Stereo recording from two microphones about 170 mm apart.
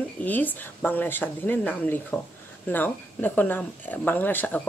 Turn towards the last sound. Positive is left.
turn(degrees=10)  # may be behind; listen again after turning